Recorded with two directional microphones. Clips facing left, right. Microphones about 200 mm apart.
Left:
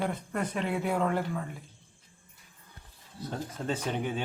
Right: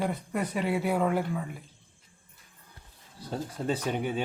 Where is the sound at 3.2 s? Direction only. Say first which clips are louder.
Right 2 dB; 10° right (ahead or behind).